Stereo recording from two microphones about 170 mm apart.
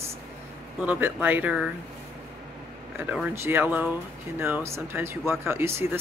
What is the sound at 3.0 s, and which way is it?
Speech, 10° right (ahead or behind).